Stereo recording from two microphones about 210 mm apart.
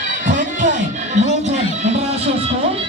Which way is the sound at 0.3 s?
35° right (ahead or behind).